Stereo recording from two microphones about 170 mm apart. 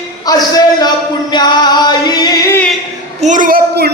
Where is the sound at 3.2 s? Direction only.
50° right (ahead or behind).